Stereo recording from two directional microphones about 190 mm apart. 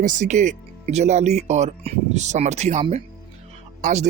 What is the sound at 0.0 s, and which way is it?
Speech, 40° right (ahead or behind).